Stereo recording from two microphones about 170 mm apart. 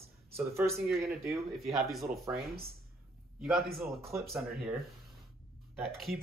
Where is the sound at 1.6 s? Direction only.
Centre (ahead or behind).